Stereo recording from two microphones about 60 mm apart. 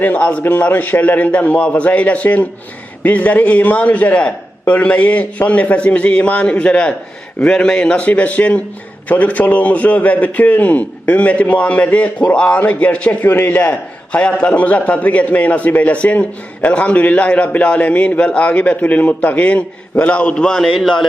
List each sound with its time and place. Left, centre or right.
0.0 s a man's voice: left
20.6 s a man's voice: centre